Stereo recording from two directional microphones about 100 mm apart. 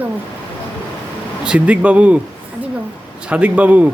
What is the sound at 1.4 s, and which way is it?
Speech, 10° right (ahead or behind).